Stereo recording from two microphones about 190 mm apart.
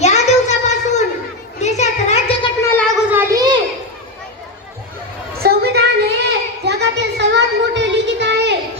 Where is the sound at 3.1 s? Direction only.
15° right (ahead or behind).